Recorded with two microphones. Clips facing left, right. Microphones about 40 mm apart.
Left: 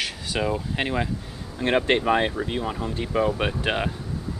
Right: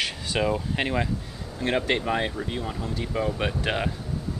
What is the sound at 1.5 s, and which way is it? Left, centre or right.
Speech, left.